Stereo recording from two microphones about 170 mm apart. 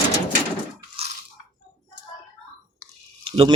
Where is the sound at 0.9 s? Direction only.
35° right (ahead or behind).